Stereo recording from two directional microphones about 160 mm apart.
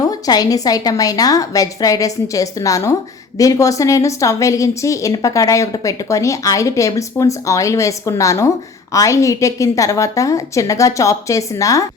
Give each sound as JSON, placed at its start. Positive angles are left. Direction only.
{"t": 0.1, "sound": "a woman's voice", "side_deg": 25}